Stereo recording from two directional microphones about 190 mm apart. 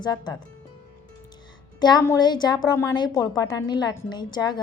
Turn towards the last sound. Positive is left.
turn(degrees=20)  # may be behind; listen again after turning